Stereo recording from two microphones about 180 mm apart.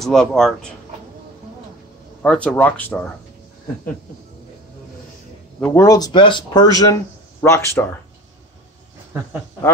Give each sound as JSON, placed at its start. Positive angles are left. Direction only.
{"t": 0.0, "sound": "speech", "side_deg": 0}
{"t": 2.2, "sound": "speech", "side_deg": 5}
{"t": 5.6, "sound": "speech", "side_deg": 15}